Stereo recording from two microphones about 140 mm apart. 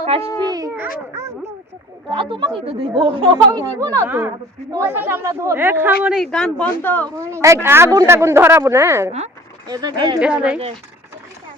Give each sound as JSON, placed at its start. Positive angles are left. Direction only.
{"t": 0.0, "sound": "babbling", "side_deg": -45}
{"t": 0.4, "sound": "a sound", "side_deg": -30}
{"t": 2.0, "sound": "speech", "side_deg": -35}
{"t": 6.1, "sound": "speech", "side_deg": 5}
{"t": 7.2, "sound": "speech", "side_deg": -20}
{"t": 10.2, "sound": "speech", "side_deg": -10}